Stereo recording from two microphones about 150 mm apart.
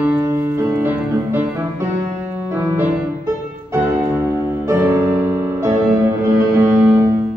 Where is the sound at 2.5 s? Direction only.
15° right (ahead or behind).